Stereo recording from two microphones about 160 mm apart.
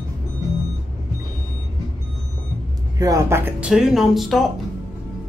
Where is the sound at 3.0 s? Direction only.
20° right (ahead or behind).